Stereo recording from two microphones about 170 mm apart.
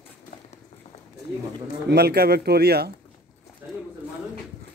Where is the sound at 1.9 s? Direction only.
70° right (ahead or behind).